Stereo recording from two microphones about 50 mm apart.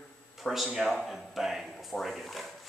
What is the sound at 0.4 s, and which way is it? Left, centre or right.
Speech, centre.